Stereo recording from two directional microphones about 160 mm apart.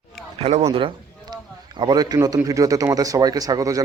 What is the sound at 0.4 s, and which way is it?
Speech, 40° right (ahead or behind).